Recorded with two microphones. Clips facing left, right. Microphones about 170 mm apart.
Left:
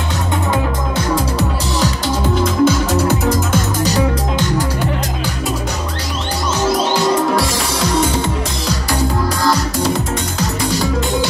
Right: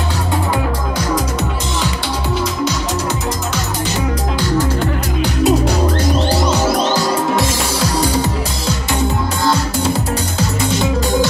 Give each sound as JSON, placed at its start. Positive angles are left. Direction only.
{"t": 2.6, "sound": "music", "side_deg": 55}
{"t": 7.3, "sound": "music", "side_deg": -30}